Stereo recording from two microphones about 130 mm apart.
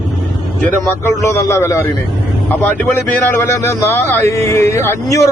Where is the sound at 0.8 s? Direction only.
20° left (ahead or behind).